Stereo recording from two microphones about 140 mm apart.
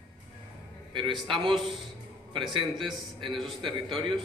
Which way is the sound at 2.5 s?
35° right (ahead or behind).